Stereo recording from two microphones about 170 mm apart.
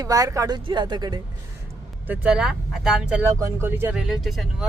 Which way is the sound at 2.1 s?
5° right (ahead or behind).